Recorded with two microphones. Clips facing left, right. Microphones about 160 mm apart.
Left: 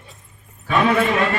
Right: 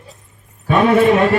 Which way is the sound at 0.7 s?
45° right (ahead or behind).